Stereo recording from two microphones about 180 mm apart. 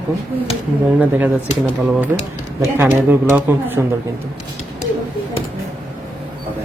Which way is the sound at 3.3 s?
10° right (ahead or behind).